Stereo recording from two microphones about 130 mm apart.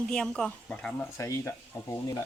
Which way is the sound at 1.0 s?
20° left (ahead or behind).